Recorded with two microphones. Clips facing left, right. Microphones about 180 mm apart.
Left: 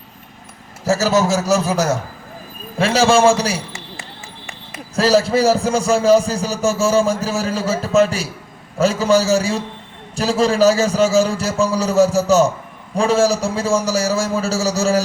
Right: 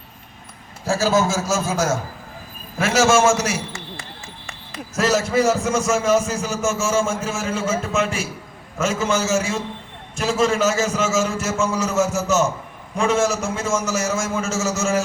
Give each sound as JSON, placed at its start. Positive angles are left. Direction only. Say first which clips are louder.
{"t": 1.3, "sound": "a man's voice", "louder": "left 5 dB", "side_deg": 65}
{"t": 2.7, "sound": "a man's voice", "louder": "left 3 dB", "side_deg": 30}
{"t": 4.9, "sound": "a man's voice", "louder": "left 4 dB", "side_deg": 30}